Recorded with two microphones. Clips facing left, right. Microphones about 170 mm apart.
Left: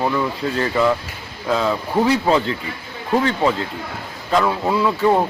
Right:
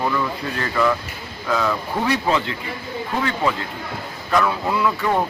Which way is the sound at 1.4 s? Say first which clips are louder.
Left 2 dB; 25° left (ahead or behind).